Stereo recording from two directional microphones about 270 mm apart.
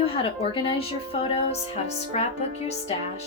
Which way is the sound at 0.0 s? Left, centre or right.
Centre.